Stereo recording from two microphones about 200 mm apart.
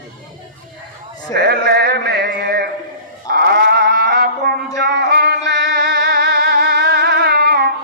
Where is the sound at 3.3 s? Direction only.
50° right (ahead or behind).